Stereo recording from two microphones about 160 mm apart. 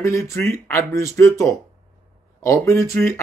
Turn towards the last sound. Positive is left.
turn(degrees=15)  # may be behind; listen again after turning